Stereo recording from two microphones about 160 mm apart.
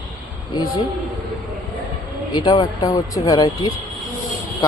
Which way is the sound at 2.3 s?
30° left (ahead or behind).